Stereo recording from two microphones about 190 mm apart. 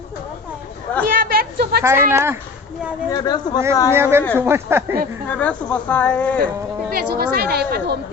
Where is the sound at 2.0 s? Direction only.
10° right (ahead or behind).